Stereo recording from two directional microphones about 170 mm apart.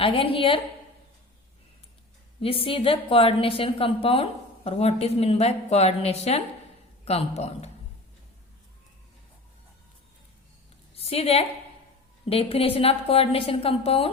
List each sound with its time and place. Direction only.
0.0 s a woman's voice: 30° left (ahead or behind)
2.4 s a woman's voice: 35° left (ahead or behind)
10.9 s a woman's voice: 35° left (ahead or behind)